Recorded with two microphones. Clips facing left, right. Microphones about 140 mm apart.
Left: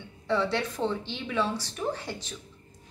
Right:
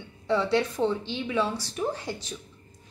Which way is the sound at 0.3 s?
15° right (ahead or behind).